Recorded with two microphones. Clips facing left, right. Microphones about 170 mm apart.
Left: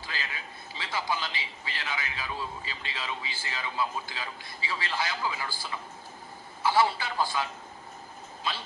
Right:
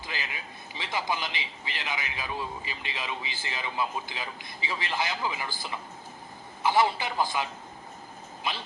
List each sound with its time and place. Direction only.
0.0 s a sound: 15° right (ahead or behind)
0.7 s a man's voice: 20° right (ahead or behind)
8.4 s a man's voice: 20° right (ahead or behind)